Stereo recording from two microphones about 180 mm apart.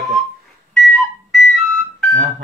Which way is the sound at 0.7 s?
Centre (ahead or behind).